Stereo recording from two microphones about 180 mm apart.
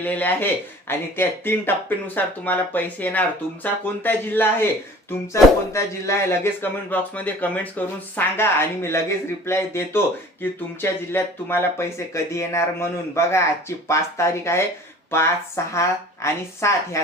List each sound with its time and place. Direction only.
0.0 s speech: 10° left (ahead or behind)